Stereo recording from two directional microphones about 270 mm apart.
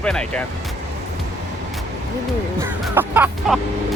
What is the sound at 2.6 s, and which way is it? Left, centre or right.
Music, centre.